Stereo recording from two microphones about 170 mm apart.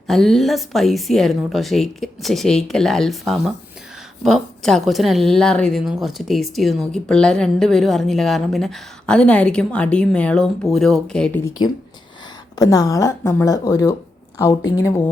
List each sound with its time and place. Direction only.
0.1 s a woman's voice: centre (ahead or behind)
12.5 s a woman's voice: 20° left (ahead or behind)